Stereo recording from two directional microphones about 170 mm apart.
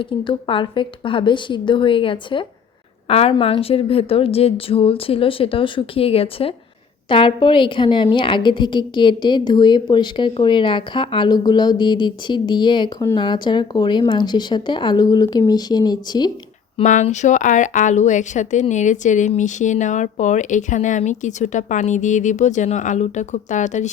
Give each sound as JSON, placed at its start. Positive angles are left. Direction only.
{"t": 0.0, "sound": "a woman's voice", "side_deg": 30}
{"t": 16.7, "sound": "speech", "side_deg": 45}